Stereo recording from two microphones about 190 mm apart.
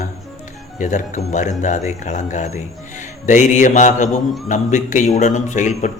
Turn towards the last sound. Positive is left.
turn(degrees=40)  # may be behind; listen again after turning